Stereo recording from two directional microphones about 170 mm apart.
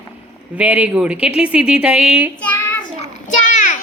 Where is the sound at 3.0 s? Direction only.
45° left (ahead or behind).